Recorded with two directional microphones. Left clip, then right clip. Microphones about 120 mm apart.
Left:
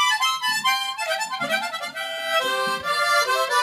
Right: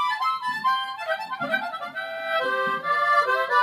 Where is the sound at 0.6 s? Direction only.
10° left (ahead or behind).